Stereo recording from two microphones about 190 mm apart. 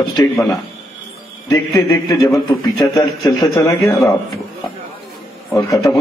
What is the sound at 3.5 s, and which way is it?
Speech, 15° left (ahead or behind).